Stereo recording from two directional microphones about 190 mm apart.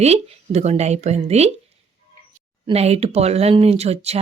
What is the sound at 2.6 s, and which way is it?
Speech, 35° right (ahead or behind).